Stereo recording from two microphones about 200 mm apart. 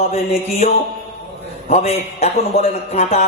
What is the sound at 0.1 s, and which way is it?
Speech, 30° left (ahead or behind).